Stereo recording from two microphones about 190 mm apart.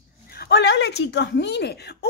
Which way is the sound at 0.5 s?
65° left (ahead or behind).